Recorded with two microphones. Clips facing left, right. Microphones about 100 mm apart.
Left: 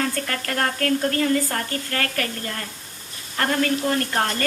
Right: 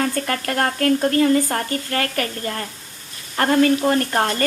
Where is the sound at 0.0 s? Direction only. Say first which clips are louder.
Right 4 dB; 30° right (ahead or behind).